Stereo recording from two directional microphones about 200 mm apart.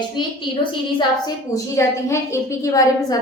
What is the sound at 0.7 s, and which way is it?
A woman's voice, 20° left (ahead or behind).